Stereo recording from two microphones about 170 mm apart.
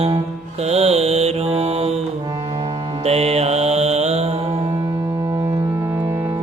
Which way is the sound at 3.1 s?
40° right (ahead or behind).